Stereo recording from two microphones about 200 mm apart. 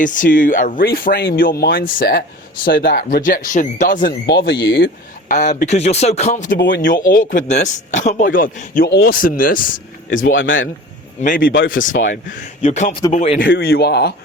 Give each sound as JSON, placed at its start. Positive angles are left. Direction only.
{"t": 0.0, "sound": "speech", "side_deg": 40}
{"t": 5.3, "sound": "a man's voice", "side_deg": 35}
{"t": 6.6, "sound": "speech", "side_deg": 65}
{"t": 6.8, "sound": "a man's voice", "side_deg": 40}
{"t": 10.3, "sound": "a man's voice", "side_deg": 75}
{"t": 11.2, "sound": "speech", "side_deg": 45}
{"t": 11.9, "sound": "speech", "side_deg": 55}
{"t": 12.6, "sound": "a man's voice", "side_deg": 35}
{"t": 13.5, "sound": "speech", "side_deg": 50}